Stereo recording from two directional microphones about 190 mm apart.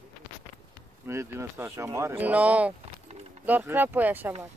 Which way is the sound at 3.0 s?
35° right (ahead or behind).